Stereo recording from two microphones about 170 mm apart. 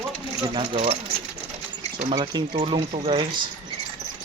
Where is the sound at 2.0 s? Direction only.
40° right (ahead or behind).